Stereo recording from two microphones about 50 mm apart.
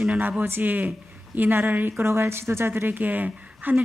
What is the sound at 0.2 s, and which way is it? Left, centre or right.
Speech, right.